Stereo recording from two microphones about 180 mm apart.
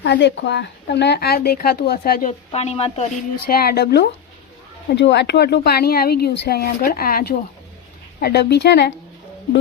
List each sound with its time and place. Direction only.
0.0 s a woman's voice: 75° left (ahead or behind); by 2.3 s 55° left (ahead or behind)
2.5 s speech: 35° left (ahead or behind)
3.4 s a woman's voice: 60° left (ahead or behind)
4.9 s a woman's voice: 75° left (ahead or behind)